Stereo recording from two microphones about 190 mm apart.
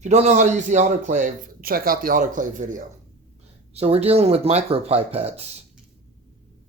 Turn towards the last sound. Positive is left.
turn(degrees=-35)  # may be behind; listen again after turning